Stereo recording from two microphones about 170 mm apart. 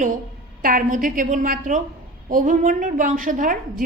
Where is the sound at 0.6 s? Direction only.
55° right (ahead or behind).